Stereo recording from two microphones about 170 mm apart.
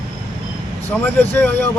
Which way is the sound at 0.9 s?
10° left (ahead or behind).